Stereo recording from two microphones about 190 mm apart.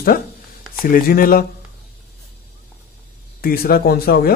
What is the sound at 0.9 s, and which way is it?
Speech, 50° left (ahead or behind).